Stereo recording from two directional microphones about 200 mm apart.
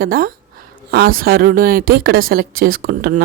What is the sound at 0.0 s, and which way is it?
A woman's voice, 45° right (ahead or behind).